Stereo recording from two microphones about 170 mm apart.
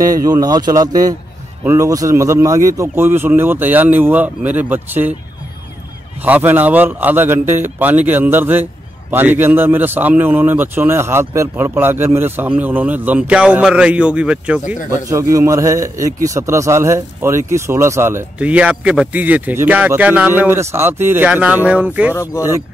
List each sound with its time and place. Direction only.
0.0 s speech: 20° right (ahead or behind)
6.2 s speech: 10° right (ahead or behind)
14.9 s speech: 20° right (ahead or behind)
22.1 s speech: 15° left (ahead or behind)